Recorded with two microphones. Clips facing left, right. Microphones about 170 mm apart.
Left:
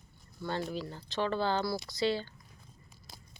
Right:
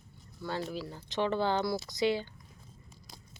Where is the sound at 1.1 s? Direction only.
20° right (ahead or behind).